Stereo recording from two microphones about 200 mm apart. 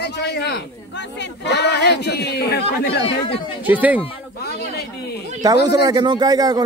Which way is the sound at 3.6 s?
10° right (ahead or behind).